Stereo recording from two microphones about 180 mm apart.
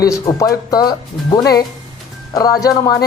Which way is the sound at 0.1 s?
20° left (ahead or behind).